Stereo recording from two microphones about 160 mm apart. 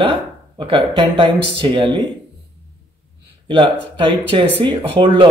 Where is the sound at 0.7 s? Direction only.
30° right (ahead or behind).